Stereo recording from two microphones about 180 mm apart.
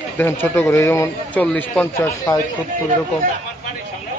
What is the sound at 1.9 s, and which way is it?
Speech, 15° left (ahead or behind).